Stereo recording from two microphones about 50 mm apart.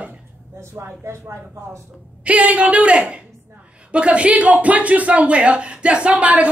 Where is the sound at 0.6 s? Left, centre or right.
Right.